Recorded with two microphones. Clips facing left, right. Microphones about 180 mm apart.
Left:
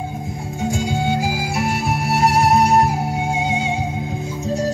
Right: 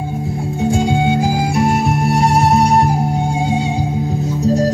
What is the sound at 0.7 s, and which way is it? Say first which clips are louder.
Music: right 5 dB; centre (ahead or behind).